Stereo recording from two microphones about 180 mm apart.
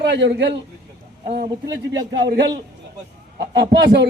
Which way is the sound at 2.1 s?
75° right (ahead or behind).